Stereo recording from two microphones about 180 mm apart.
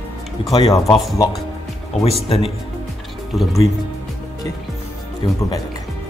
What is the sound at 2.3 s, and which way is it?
Speech, 30° left (ahead or behind).